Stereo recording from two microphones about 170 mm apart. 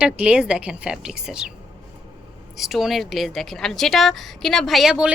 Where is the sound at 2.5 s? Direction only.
Centre (ahead or behind).